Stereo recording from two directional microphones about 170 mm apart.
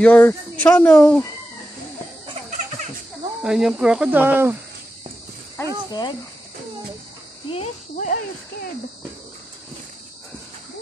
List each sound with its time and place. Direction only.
0.0 s speech: 10° left (ahead or behind)
3.4 s speech: 5° right (ahead or behind)
5.9 s speech: 25° left (ahead or behind)
7.4 s speech: 35° left (ahead or behind)